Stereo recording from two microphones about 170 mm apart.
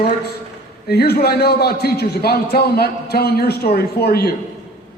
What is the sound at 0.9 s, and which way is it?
A man's voice, 70° left (ahead or behind).